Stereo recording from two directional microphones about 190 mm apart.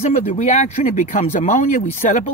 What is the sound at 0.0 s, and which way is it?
Speech, 40° left (ahead or behind).